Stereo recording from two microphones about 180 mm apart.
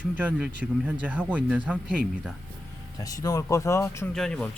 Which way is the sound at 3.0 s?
20° left (ahead or behind).